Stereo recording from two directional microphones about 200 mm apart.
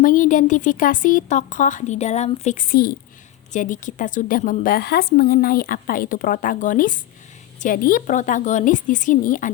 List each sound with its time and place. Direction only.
0.0 s a woman's voice: 40° left (ahead or behind)